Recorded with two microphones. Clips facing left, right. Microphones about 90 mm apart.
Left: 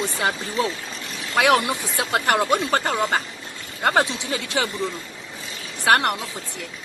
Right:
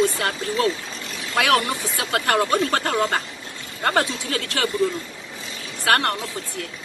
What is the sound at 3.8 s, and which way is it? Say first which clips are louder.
Speech: left 1 dB; 15° left (ahead or behind).